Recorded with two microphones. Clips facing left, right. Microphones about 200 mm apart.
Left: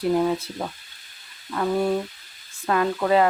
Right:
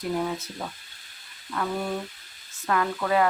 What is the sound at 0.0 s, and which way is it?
Speech, 30° left (ahead or behind).